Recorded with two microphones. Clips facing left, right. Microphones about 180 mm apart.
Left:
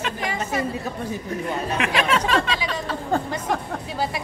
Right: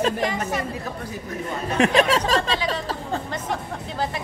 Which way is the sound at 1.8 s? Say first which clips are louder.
Right 6 dB; 35° right (ahead or behind).